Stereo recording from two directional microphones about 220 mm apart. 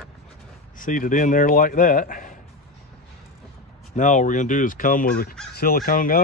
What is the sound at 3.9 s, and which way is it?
Speech, 35° left (ahead or behind).